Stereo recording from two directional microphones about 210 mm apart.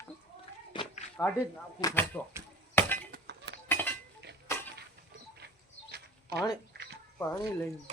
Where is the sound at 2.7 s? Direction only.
10° left (ahead or behind).